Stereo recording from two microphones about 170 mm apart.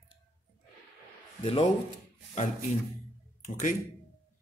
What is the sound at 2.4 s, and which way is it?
Speech, 45° left (ahead or behind).